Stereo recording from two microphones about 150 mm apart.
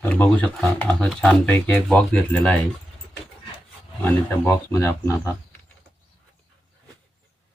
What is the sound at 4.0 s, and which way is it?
A man's voice, 15° left (ahead or behind).